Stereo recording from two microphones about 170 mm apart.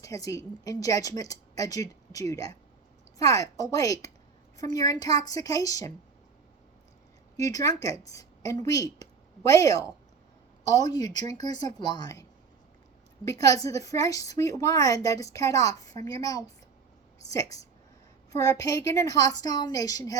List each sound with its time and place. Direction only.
0.0 s a woman's voice: 20° left (ahead or behind)
7.3 s a woman's voice: 20° left (ahead or behind)
13.2 s a woman's voice: 20° left (ahead or behind)